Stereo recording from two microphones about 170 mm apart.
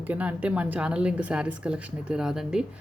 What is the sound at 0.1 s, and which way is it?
Speech, 10° right (ahead or behind).